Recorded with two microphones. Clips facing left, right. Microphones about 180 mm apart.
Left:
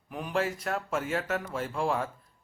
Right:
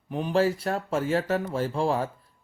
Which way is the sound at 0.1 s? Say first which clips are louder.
Right 7 dB; 30° right (ahead or behind).